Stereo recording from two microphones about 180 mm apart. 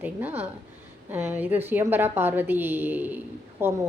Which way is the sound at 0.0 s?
10° right (ahead or behind).